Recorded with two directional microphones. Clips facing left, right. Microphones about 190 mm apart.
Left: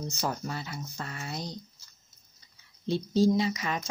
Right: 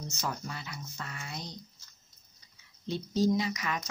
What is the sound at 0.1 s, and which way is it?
Speech, 35° left (ahead or behind).